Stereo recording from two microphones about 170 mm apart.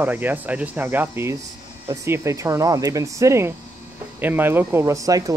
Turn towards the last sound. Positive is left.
turn(degrees=-20)  # may be behind; listen again after turning